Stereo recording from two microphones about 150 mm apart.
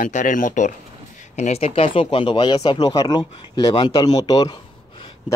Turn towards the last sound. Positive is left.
turn(degrees=30)  # may be behind; listen again after turning